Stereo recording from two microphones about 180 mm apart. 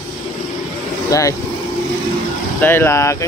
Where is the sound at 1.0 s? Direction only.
20° left (ahead or behind).